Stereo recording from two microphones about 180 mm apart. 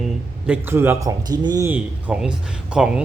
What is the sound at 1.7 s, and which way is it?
A man's voice, 5° right (ahead or behind).